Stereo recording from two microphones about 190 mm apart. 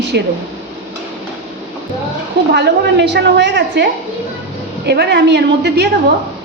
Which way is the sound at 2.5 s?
60° right (ahead or behind).